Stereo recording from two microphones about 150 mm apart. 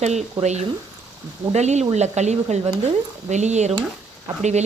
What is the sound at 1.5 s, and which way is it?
Speech, 50° right (ahead or behind).